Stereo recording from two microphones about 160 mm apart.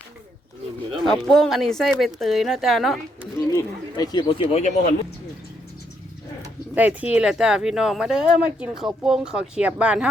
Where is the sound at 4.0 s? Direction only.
25° left (ahead or behind).